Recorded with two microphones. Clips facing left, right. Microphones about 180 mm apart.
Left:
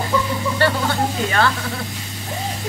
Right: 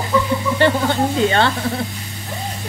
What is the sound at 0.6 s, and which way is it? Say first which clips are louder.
Speech: right 3 dB; 20° right (ahead or behind).